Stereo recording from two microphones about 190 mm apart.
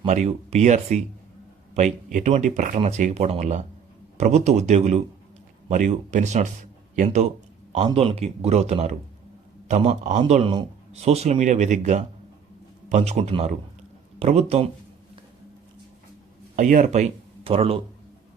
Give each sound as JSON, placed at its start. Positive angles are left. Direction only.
{"t": 0.0, "sound": "a man's voice", "side_deg": -35}
{"t": 2.1, "sound": "a man's voice", "side_deg": -40}
{"t": 16.6, "sound": "speech", "side_deg": -40}